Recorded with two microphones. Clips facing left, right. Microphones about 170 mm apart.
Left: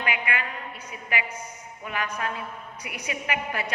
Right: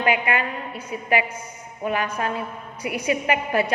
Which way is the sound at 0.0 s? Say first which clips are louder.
Right 8 dB; 35° right (ahead or behind).